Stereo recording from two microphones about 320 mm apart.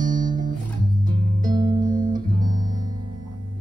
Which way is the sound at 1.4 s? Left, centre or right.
Right.